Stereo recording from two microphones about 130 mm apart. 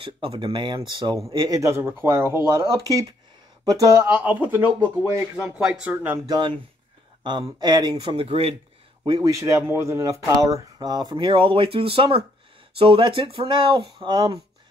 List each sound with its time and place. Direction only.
0.0 s speech: 40° right (ahead or behind)
1.6 s speech: 20° right (ahead or behind)
5.0 s speech: 25° right (ahead or behind)
5.4 s speech: 10° right (ahead or behind)
6.2 s speech: 35° right (ahead or behind); by 8.5 s 50° right (ahead or behind)
9.2 s speech: 25° right (ahead or behind)